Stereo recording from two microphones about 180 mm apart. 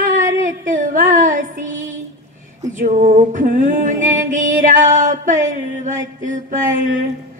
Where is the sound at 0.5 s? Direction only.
45° right (ahead or behind).